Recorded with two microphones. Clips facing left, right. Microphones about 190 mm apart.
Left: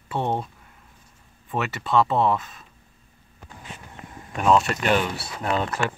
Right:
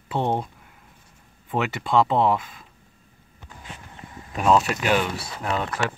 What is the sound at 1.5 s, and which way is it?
Speech, 15° right (ahead or behind).